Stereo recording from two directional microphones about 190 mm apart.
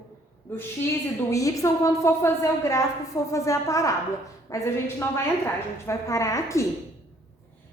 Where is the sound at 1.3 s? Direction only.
15° left (ahead or behind).